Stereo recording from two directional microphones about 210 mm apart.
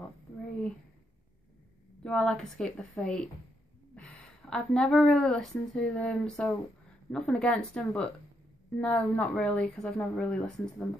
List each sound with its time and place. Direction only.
2.0 s a woman's voice: 5° left (ahead or behind)